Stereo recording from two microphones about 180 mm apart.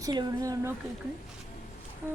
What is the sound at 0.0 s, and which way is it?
Speech, 20° right (ahead or behind).